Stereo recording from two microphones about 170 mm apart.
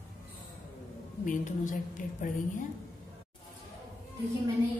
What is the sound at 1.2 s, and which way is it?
Speech, 50° left (ahead or behind).